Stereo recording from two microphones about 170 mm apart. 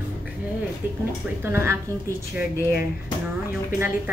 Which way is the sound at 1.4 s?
15° right (ahead or behind).